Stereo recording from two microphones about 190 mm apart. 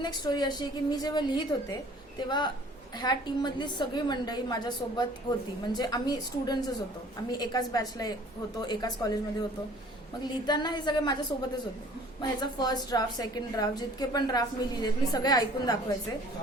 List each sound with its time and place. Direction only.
0.0 s a woman's voice: 20° left (ahead or behind)
10.4 s a woman's voice: 20° left (ahead or behind)